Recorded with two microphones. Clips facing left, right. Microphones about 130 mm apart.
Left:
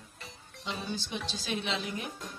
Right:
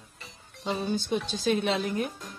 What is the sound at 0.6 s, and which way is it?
A woman's voice, 50° right (ahead or behind).